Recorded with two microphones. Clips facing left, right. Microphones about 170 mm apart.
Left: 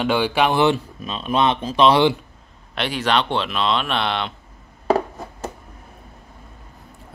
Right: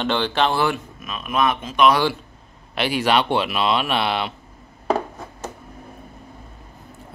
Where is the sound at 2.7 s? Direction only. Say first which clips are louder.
Right 2 dB; 5° right (ahead or behind).